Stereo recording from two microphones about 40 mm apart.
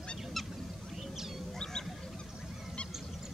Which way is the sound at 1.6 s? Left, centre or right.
Centre.